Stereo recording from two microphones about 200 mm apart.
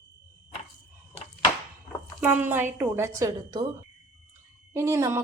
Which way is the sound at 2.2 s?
10° right (ahead or behind).